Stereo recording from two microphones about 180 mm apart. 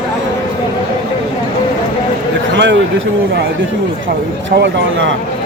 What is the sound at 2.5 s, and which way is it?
Speech, 75° right (ahead or behind).